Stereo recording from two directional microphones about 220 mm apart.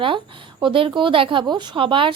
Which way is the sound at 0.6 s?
25° right (ahead or behind).